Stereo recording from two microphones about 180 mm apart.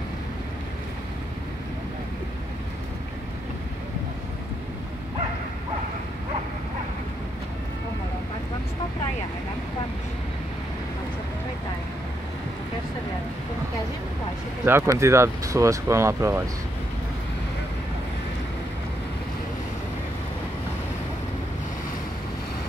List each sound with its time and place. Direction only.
14.6 s speech: 15° right (ahead or behind)